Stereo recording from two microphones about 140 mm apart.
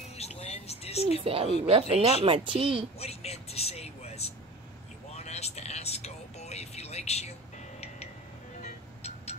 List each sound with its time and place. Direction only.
0.2 s a sound: 50° left (ahead or behind)
1.2 s speech: 40° right (ahead or behind)
3.0 s vehicle: 45° left (ahead or behind)
8.6 s music: 50° left (ahead or behind)